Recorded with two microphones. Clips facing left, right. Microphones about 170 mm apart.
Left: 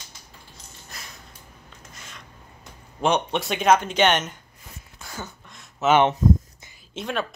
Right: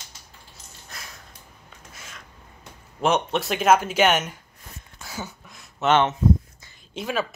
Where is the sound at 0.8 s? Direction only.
Centre (ahead or behind).